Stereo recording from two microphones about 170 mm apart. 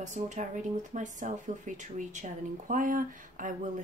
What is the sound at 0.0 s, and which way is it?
Speech, 45° right (ahead or behind).